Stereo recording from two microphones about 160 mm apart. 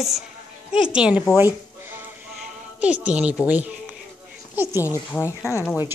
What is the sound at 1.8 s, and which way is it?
Music, 15° right (ahead or behind).